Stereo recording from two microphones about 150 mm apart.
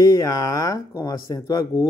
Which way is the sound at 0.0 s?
25° left (ahead or behind).